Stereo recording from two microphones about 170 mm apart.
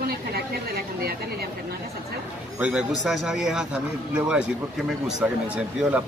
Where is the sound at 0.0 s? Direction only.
65° right (ahead or behind).